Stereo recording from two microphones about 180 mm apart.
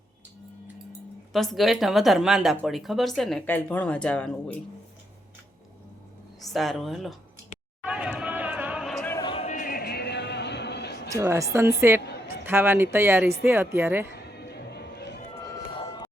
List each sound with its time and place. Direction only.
1.3 s speech: centre (ahead or behind)
6.5 s speech: centre (ahead or behind)
7.9 s chatter: 5° right (ahead or behind)
9.1 s a sound: 25° left (ahead or behind)
9.5 s music: 50° left (ahead or behind); by 11.1 s 70° left (ahead or behind)
11.1 s speech: 15° right (ahead or behind)
14.4 s music: 65° left (ahead or behind)
15.7 s a sound: 25° left (ahead or behind)